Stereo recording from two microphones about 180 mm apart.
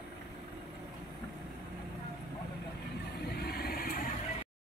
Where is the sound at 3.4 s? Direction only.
60° left (ahead or behind).